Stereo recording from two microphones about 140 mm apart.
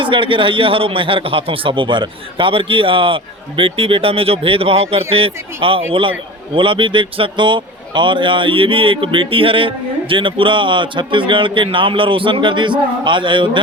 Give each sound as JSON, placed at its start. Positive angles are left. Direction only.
{"t": 0.0, "sound": "a man's voice", "side_deg": -35}